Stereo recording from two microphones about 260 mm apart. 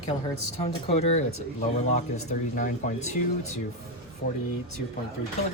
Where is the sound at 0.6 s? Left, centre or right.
Left.